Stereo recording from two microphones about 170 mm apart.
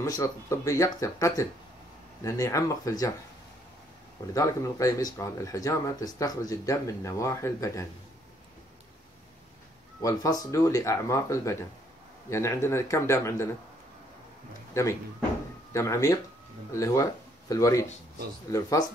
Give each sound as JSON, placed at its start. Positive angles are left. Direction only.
{"t": 0.0, "sound": "speech", "side_deg": 20}
{"t": 4.3, "sound": "speech", "side_deg": 20}
{"t": 10.0, "sound": "a man's voice", "side_deg": 20}
{"t": 14.7, "sound": "a man's voice", "side_deg": 15}